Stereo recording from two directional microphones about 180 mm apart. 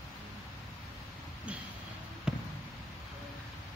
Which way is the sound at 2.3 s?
5° right (ahead or behind).